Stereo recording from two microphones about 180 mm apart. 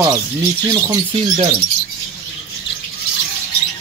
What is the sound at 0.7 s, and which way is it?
Speech, 25° right (ahead or behind).